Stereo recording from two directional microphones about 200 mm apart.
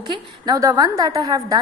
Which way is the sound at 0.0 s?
20° right (ahead or behind).